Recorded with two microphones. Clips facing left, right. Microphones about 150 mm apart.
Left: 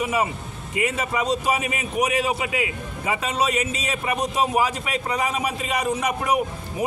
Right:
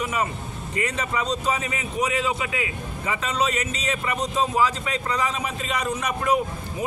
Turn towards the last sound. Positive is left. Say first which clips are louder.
# left 1 dB
turn(degrees=15)  # may be behind; listen again after turning